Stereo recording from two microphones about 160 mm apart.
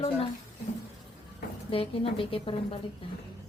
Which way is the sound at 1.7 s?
35° left (ahead or behind).